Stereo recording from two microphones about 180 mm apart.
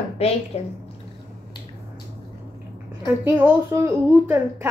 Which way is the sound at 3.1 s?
10° right (ahead or behind).